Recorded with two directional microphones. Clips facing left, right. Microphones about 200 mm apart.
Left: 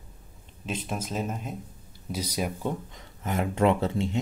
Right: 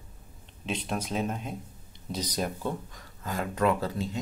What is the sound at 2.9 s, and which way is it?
Speech, 20° left (ahead or behind).